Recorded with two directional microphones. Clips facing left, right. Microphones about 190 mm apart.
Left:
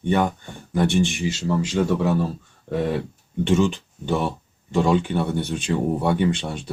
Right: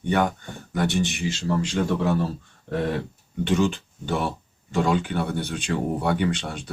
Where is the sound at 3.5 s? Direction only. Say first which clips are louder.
Left 2 dB; 20° left (ahead or behind).